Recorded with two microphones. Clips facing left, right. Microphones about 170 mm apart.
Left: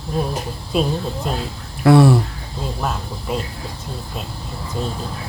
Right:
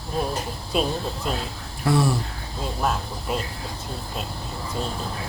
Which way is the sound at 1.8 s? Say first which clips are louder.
Left 10 dB; 65° left (ahead or behind).